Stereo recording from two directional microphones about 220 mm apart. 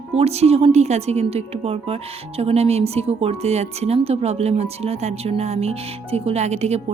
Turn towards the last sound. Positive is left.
turn(degrees=-30)  # may be behind; listen again after turning